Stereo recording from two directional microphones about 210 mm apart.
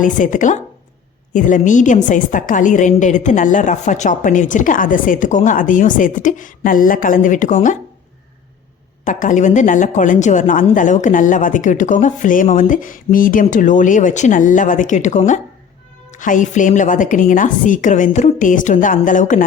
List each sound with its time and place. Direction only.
0.0 s a woman's voice: 40° left (ahead or behind)
9.0 s a woman's voice: 35° left (ahead or behind)